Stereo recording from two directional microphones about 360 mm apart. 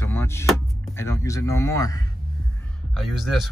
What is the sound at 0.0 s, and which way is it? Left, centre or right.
Speech, centre.